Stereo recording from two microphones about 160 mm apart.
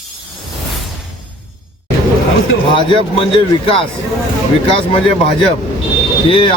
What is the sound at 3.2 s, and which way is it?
Speech, 35° left (ahead or behind).